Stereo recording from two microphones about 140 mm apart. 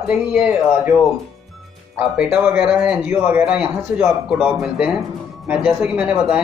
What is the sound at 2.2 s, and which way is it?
Speech, 5° right (ahead or behind).